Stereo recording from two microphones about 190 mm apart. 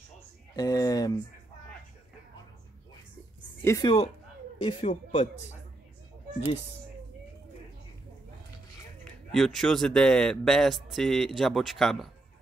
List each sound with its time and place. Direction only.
0.6 s speech: 20° left (ahead or behind)
3.6 s speech: 15° left (ahead or behind)
4.6 s speech: 30° left (ahead or behind)
9.3 s speech: centre (ahead or behind)